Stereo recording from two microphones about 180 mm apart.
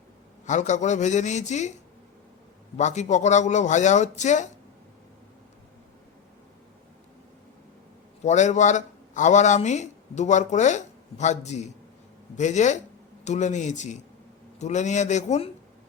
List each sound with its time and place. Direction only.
0.4 s a man's voice: 40° left (ahead or behind)
2.7 s a man's voice: 40° left (ahead or behind)
8.2 s a man's voice: 40° left (ahead or behind)